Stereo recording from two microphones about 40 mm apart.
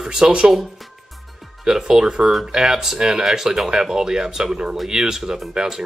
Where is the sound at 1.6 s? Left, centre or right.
Centre.